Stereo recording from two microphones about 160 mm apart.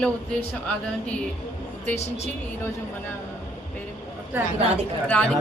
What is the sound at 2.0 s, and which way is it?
Speech, 40° left (ahead or behind).